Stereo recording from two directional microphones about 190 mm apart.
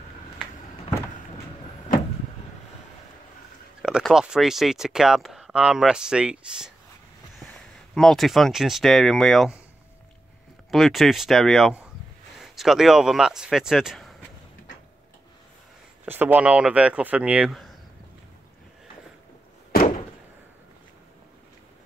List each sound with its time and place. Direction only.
3.8 s speech: 5° right (ahead or behind)
7.9 s speech: centre (ahead or behind)
10.7 s speech: centre (ahead or behind)
16.1 s speech: 10° right (ahead or behind)
19.7 s a sound: 50° left (ahead or behind)